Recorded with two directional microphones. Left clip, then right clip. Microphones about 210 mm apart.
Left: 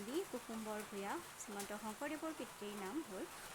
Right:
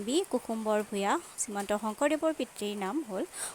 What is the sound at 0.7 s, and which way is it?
Speech, 45° right (ahead or behind).